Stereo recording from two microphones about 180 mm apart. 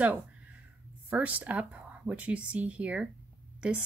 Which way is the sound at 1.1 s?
10° right (ahead or behind).